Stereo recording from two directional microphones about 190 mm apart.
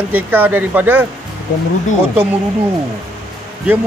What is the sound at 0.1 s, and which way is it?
Speech, 10° right (ahead or behind).